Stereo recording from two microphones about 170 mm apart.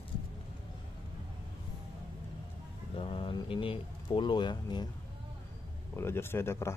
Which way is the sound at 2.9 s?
30° left (ahead or behind).